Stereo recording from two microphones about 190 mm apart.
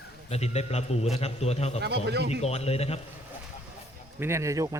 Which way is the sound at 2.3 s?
35° left (ahead or behind).